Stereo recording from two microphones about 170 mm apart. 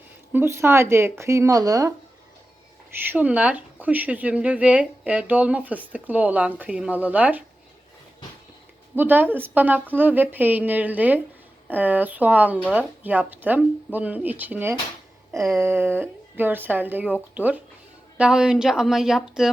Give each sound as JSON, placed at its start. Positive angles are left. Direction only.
{"t": 0.3, "sound": "a woman's voice", "side_deg": -15}
{"t": 3.0, "sound": "speech", "side_deg": -10}
{"t": 9.0, "sound": "a woman's voice", "side_deg": -10}